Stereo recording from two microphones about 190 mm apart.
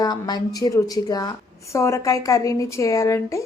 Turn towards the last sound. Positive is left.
turn(degrees=15)  # may be behind; listen again after turning